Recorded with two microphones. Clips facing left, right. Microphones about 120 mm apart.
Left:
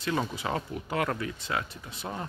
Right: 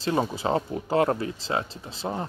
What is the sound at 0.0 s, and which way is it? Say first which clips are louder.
Speech: right 5 dB; 30° right (ahead or behind).